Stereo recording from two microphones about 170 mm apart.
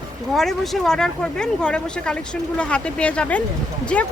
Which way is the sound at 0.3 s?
Centre (ahead or behind).